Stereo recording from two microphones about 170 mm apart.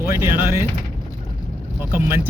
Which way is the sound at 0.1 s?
15° right (ahead or behind).